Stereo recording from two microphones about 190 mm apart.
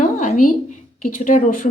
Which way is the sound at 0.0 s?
40° left (ahead or behind).